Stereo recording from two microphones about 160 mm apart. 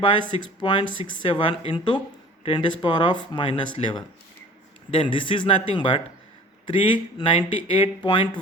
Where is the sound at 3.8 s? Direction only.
40° left (ahead or behind).